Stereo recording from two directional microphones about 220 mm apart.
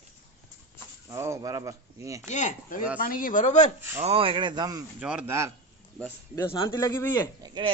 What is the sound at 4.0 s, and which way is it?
Speech, 25° right (ahead or behind).